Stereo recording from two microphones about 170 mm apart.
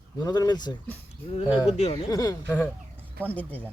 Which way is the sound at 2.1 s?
25° left (ahead or behind).